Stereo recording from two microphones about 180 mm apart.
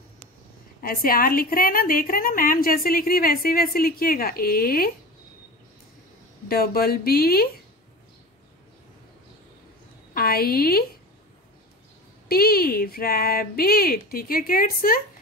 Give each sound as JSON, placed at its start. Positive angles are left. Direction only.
{"t": 0.7, "sound": "a woman's voice", "side_deg": 55}
{"t": 6.5, "sound": "speech", "side_deg": 60}
{"t": 10.1, "sound": "a woman's voice", "side_deg": 55}
{"t": 12.3, "sound": "speech", "side_deg": 60}